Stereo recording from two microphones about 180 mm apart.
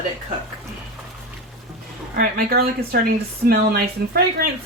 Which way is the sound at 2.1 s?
60° right (ahead or behind).